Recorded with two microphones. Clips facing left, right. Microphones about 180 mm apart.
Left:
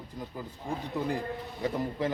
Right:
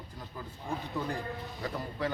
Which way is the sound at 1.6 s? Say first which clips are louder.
Left 5 dB; 20° left (ahead or behind).